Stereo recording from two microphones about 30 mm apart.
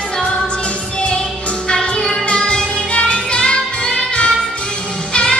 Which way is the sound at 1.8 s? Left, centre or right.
Left.